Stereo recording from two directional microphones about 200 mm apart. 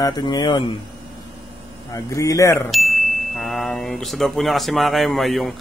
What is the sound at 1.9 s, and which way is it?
Speech, 15° left (ahead or behind).